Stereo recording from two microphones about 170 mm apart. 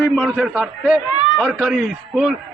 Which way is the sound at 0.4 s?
5° left (ahead or behind).